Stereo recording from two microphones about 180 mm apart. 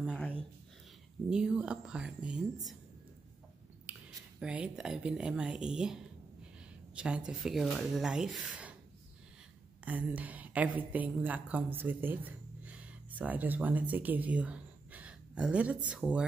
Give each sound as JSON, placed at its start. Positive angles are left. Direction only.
{"t": 1.3, "sound": "speech", "side_deg": -5}
{"t": 3.9, "sound": "a sound", "side_deg": -10}
{"t": 4.4, "sound": "speech", "side_deg": -5}
{"t": 7.0, "sound": "speech", "side_deg": -5}
{"t": 9.8, "sound": "a woman's voice", "side_deg": -10}